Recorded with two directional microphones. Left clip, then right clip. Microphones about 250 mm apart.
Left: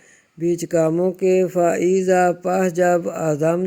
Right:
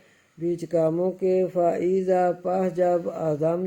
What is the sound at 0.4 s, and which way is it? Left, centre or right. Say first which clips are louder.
Speech: left 5 dB; left.